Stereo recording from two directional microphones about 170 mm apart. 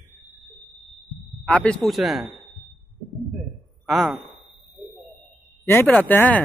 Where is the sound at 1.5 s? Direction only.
5° left (ahead or behind).